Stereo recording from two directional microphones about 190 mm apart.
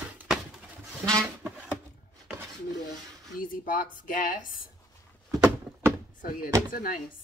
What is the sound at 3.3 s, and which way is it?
Speech, 45° left (ahead or behind).